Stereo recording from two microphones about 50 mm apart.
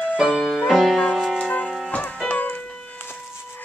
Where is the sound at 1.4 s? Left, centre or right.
Left.